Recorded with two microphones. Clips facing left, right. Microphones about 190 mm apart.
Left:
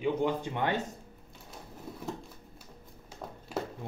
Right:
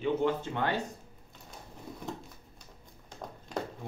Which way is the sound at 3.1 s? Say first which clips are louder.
Even; 5° left (ahead or behind).